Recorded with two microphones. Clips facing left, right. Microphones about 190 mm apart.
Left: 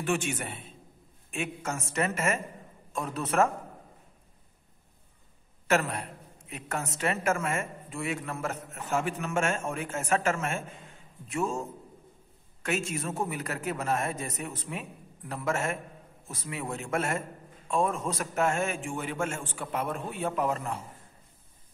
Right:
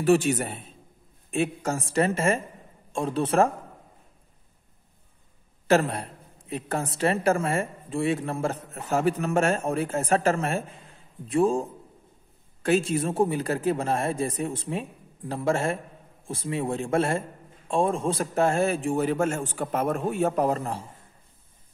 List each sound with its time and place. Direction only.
0.0 s a woman's voice: 35° right (ahead or behind)
5.7 s a woman's voice: 30° right (ahead or behind)